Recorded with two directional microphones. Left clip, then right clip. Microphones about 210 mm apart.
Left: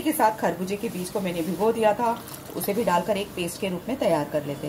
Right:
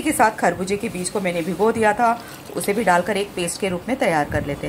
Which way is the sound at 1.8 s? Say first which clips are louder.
Right 5 dB; 15° right (ahead or behind).